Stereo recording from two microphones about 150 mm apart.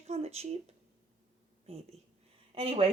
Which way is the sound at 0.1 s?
45° right (ahead or behind).